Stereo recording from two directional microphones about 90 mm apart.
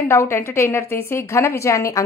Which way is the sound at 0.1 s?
30° left (ahead or behind).